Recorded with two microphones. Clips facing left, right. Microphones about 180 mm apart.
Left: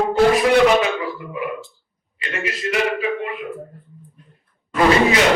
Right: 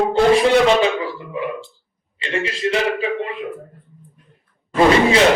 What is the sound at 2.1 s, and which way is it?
A man's voice, 30° right (ahead or behind).